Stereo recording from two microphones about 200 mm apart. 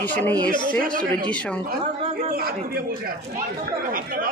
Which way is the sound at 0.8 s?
45° right (ahead or behind).